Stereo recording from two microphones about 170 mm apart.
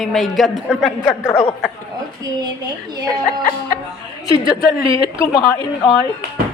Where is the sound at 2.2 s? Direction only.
25° right (ahead or behind).